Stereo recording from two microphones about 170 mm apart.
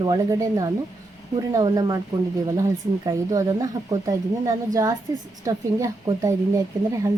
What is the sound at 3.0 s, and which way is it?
A woman's voice, 20° right (ahead or behind).